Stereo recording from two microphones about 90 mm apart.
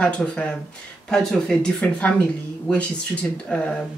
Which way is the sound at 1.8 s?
15° left (ahead or behind).